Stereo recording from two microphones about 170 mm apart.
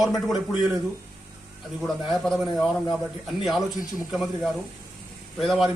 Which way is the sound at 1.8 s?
Centre (ahead or behind).